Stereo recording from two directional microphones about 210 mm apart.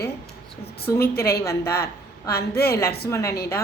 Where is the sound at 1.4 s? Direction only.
15° left (ahead or behind).